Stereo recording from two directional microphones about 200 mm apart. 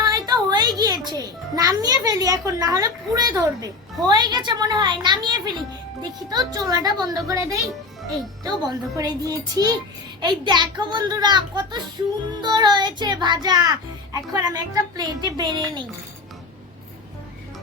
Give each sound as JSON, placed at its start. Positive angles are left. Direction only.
{"t": 0.0, "sound": "music", "side_deg": -20}
{"t": 4.0, "sound": "speech", "side_deg": -20}